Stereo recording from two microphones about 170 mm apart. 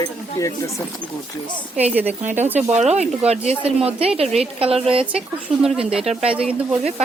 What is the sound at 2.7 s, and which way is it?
Speech, 40° right (ahead or behind).